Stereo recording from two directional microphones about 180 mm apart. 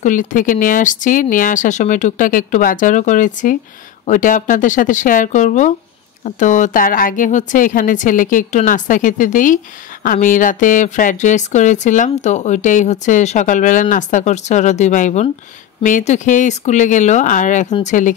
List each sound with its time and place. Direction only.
0.0 s speech: 45° left (ahead or behind)